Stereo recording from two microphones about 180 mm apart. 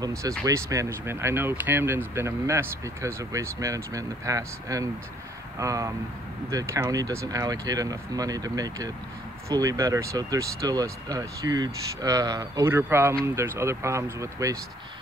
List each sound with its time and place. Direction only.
0.0 s speech: 15° right (ahead or behind)